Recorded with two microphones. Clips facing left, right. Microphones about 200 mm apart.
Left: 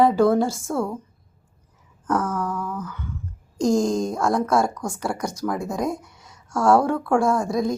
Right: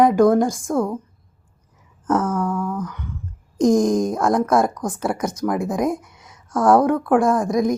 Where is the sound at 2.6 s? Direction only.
15° right (ahead or behind).